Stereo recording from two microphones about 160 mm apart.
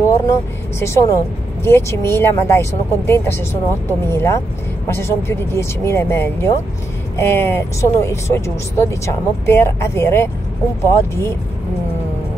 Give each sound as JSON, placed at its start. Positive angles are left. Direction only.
{"t": 0.0, "sound": "speech", "side_deg": 15}